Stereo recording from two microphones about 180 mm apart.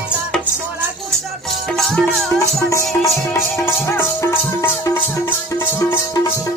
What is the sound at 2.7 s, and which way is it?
Music, 15° left (ahead or behind).